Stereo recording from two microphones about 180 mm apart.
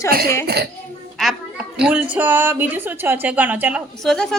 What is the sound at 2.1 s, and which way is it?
A woman's voice, 10° right (ahead or behind).